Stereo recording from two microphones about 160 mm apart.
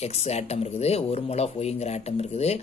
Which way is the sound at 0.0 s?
40° left (ahead or behind).